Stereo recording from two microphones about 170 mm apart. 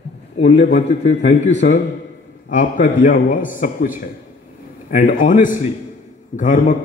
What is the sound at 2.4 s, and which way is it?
A man's voice, 50° left (ahead or behind).